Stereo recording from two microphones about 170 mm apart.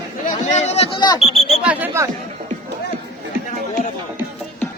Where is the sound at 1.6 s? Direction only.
10° right (ahead or behind).